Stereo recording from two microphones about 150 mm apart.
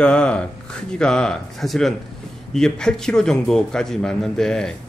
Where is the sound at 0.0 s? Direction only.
5° left (ahead or behind).